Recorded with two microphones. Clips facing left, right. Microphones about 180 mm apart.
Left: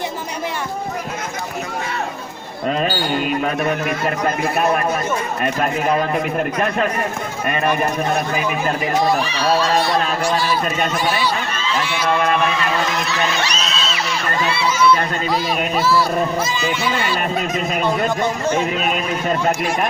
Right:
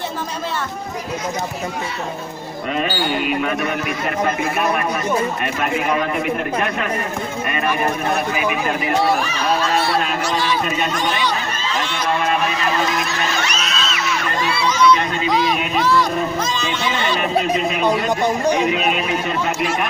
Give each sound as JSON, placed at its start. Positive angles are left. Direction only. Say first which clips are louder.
{"t": 2.8, "sound": "a man's voice", "louder": "right 2 dB", "side_deg": 40}
{"t": 5.4, "sound": "a man's voice", "louder": "left 2 dB", "side_deg": 35}
{"t": 10.2, "sound": "speech", "louder": "left 1 dB", "side_deg": 10}
{"t": 11.8, "sound": "a sound", "louder": "left 2 dB", "side_deg": 10}
{"t": 13.5, "sound": "music", "louder": "even", "side_deg": 30}
{"t": 14.7, "sound": "a sound", "louder": "right 1 dB", "side_deg": 5}
{"t": 15.2, "sound": "speech", "louder": "right 1 dB", "side_deg": 5}
{"t": 17.6, "sound": "speech", "louder": "right 1 dB", "side_deg": 45}
{"t": 17.8, "sound": "a man's voice", "louder": "right 1 dB", "side_deg": -15}
{"t": 18.7, "sound": "a man's voice", "louder": "right 2 dB", "side_deg": 40}